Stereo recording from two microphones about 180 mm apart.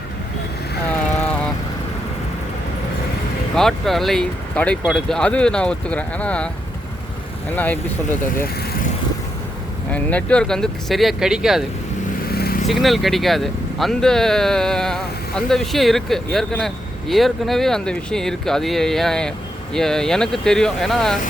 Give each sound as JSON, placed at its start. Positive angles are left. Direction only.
{"t": 3.5, "sound": "speech", "side_deg": 0}
{"t": 7.5, "sound": "speech", "side_deg": 10}
{"t": 9.9, "sound": "speech", "side_deg": 5}
{"t": 12.3, "sound": "vehicle", "side_deg": 60}
{"t": 12.6, "sound": "speech", "side_deg": 0}